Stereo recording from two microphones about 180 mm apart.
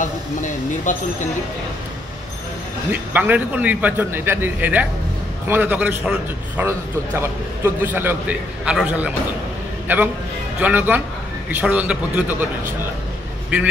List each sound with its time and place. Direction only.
0.0 s speech: 45° left (ahead or behind)
2.9 s a man's voice: 10° right (ahead or behind)